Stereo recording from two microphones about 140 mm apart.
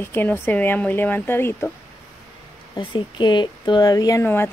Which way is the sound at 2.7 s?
35° left (ahead or behind).